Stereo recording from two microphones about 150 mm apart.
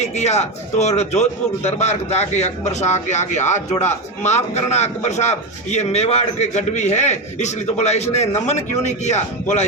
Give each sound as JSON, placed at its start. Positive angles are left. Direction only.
{"t": 0.0, "sound": "a man's voice", "side_deg": 50}